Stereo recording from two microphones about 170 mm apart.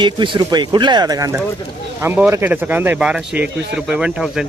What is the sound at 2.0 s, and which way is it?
Speech, 10° right (ahead or behind).